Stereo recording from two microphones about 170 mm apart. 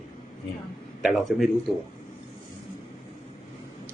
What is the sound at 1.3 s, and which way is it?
Speech, centre (ahead or behind).